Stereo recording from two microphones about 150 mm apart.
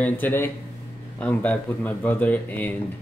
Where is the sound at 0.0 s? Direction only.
15° left (ahead or behind).